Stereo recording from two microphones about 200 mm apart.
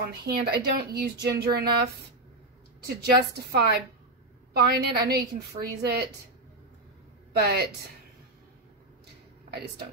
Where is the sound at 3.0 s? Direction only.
50° right (ahead or behind).